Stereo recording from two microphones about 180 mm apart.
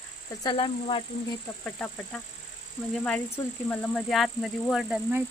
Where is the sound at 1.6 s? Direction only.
5° left (ahead or behind).